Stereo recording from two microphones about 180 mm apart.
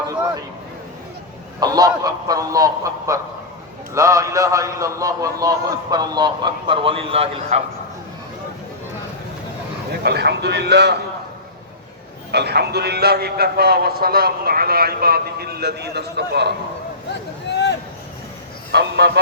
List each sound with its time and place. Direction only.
1.5 s a man's voice: 20° right (ahead or behind)
10.0 s a man's voice: 65° right (ahead or behind)
12.3 s a man's voice: 65° right (ahead or behind)
17.5 s a sound: 70° left (ahead or behind)
18.7 s speech: 70° right (ahead or behind)